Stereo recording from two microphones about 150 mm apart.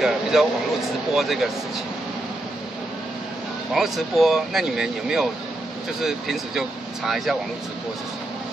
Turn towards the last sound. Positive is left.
turn(degrees=0)  # may be behind; listen again after turning